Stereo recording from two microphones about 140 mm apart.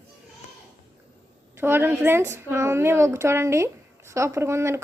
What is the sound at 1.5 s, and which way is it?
A woman's voice, 15° right (ahead or behind).